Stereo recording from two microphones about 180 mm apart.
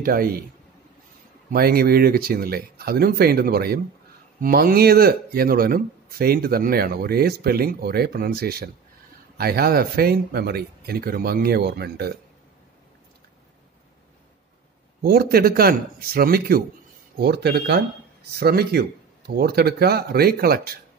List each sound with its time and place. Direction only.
0.0 s a man's voice: 55° right (ahead or behind)
1.5 s speech: 55° right (ahead or behind)
15.0 s speech: 60° right (ahead or behind)